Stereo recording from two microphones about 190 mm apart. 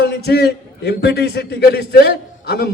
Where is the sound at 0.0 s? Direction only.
60° left (ahead or behind).